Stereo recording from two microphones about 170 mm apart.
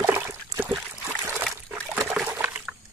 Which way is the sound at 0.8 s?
15° right (ahead or behind).